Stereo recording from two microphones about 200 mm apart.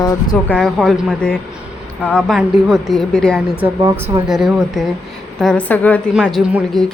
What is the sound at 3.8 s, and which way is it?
A woman's voice, 15° right (ahead or behind).